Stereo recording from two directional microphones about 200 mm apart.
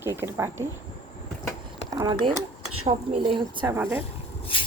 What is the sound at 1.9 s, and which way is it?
A woman's voice, 20° right (ahead or behind).